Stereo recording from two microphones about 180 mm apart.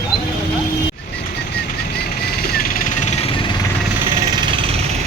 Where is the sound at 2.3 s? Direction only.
55° left (ahead or behind); by 3.5 s 35° left (ahead or behind).